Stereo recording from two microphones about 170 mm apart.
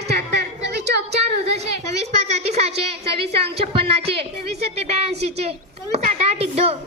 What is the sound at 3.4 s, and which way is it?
A woman's voice, 35° right (ahead or behind).